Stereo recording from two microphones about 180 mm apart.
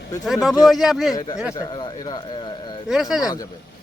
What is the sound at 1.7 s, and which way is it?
Speech, 25° left (ahead or behind).